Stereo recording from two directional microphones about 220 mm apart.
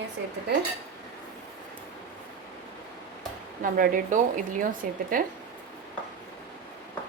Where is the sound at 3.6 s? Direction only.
40° right (ahead or behind).